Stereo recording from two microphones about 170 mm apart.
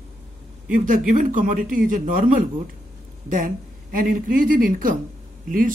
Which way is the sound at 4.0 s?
55° right (ahead or behind).